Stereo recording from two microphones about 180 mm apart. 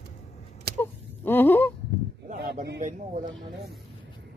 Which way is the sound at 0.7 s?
60° right (ahead or behind).